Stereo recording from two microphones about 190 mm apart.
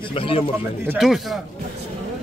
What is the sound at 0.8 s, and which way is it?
Speech, centre (ahead or behind).